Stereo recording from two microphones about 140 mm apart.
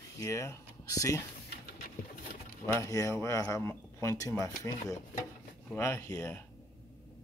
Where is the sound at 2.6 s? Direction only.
20° left (ahead or behind).